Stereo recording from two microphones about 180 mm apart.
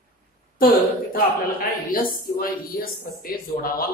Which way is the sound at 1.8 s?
55° left (ahead or behind).